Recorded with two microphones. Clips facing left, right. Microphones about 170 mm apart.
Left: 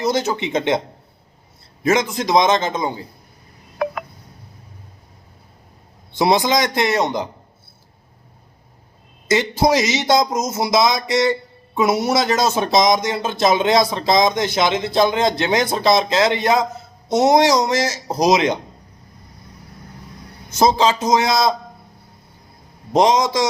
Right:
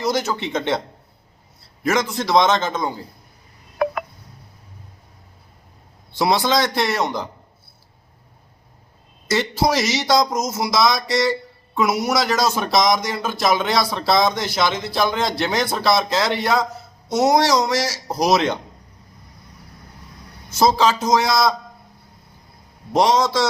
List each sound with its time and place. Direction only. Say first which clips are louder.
0.0 s speech: left 2 dB; 20° left (ahead or behind)
1.8 s a man's voice: left 3 dB; 20° left (ahead or behind)
6.1 s speech: left 2 dB; 20° left (ahead or behind)
9.2 s speech: left 3 dB; 20° left (ahead or behind)
20.5 s speech: left 1 dB; 20° left (ahead or behind)
22.9 s a man's voice: left 2 dB; 20° left (ahead or behind)